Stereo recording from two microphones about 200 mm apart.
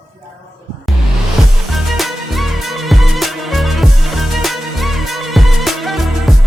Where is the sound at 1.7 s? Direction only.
Centre (ahead or behind).